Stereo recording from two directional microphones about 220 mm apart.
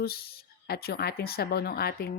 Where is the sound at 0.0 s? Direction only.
45° left (ahead or behind).